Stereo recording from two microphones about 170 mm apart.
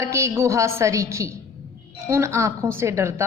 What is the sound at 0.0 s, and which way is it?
A woman's voice, 15° right (ahead or behind).